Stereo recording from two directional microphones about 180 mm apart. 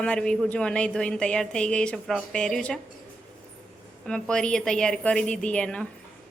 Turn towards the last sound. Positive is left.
turn(degrees=5)  # may be behind; listen again after turning